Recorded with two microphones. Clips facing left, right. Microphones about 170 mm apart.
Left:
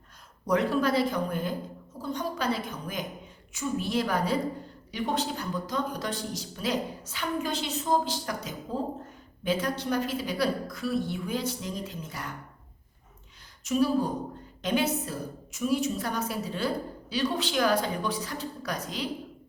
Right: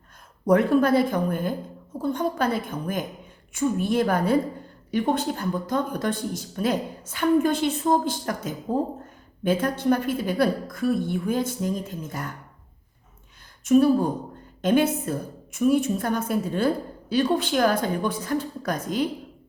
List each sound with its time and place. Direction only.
0.4 s a woman's voice: 55° right (ahead or behind)
13.7 s a woman's voice: 55° right (ahead or behind)